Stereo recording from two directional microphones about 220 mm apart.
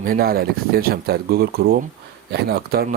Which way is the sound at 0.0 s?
40° right (ahead or behind).